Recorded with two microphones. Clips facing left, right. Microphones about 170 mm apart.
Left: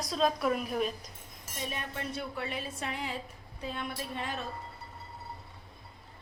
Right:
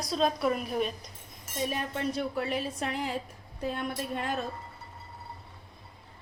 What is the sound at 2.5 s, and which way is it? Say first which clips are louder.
Speech: right 5 dB; 45° right (ahead or behind).